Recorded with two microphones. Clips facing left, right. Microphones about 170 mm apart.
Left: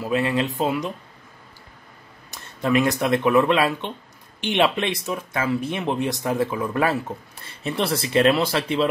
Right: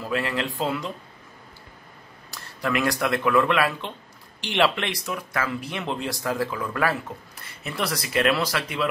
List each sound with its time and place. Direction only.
0.0 s speech: 20° left (ahead or behind)
2.3 s speech: 20° left (ahead or behind)